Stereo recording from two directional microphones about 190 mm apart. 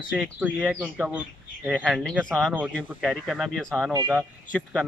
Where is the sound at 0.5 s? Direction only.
5° left (ahead or behind).